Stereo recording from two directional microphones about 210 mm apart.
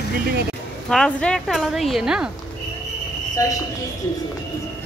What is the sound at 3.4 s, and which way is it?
Speech, 15° left (ahead or behind).